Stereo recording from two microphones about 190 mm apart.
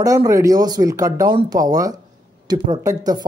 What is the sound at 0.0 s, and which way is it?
Speech, 20° right (ahead or behind).